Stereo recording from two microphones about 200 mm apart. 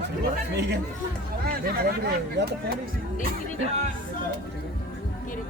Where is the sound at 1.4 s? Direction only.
50° right (ahead or behind).